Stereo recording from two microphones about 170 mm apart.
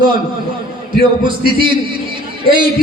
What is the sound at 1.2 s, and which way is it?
Speech, 30° right (ahead or behind).